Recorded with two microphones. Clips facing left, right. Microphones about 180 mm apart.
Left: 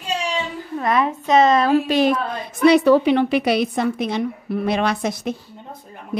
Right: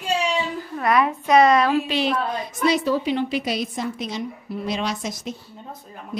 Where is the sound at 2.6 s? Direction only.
65° left (ahead or behind).